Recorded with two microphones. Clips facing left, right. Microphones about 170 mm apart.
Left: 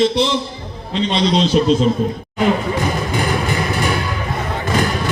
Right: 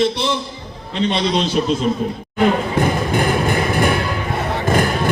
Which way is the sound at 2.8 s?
55° right (ahead or behind).